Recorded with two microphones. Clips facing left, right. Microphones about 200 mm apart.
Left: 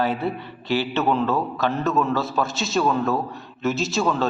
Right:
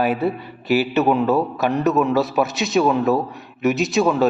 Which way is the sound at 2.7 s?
15° right (ahead or behind).